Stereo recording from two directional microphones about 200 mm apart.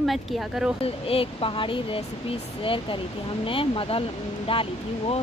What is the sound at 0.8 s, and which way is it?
Speech, 30° left (ahead or behind).